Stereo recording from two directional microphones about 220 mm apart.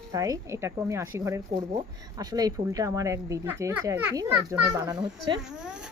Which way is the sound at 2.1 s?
15° right (ahead or behind).